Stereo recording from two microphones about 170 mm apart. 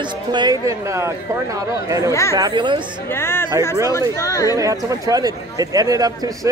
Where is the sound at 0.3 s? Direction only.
25° right (ahead or behind).